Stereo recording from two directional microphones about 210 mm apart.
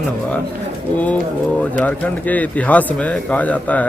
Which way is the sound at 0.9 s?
5° left (ahead or behind).